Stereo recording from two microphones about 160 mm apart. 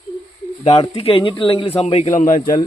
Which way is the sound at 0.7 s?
35° left (ahead or behind).